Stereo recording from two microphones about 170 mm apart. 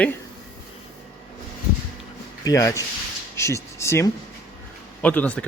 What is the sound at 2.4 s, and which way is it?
Speech, 20° left (ahead or behind).